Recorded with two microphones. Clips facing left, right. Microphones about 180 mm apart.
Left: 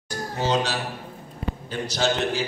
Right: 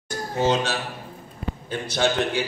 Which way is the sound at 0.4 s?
50° right (ahead or behind).